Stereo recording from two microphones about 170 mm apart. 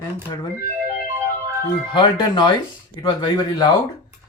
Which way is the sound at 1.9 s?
25° left (ahead or behind).